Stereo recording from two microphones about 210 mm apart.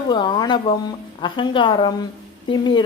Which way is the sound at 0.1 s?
20° left (ahead or behind).